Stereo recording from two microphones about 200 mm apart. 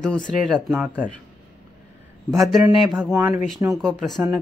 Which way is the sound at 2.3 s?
Centre (ahead or behind).